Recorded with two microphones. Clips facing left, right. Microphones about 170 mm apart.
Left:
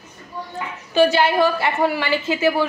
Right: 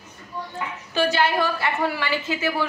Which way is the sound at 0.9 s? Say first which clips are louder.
Left 5 dB; 25° left (ahead or behind).